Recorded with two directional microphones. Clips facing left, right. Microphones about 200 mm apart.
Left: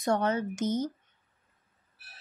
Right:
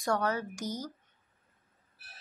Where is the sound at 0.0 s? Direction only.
20° left (ahead or behind).